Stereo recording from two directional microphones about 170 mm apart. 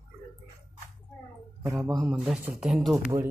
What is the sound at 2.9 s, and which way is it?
Speech, 15° right (ahead or behind).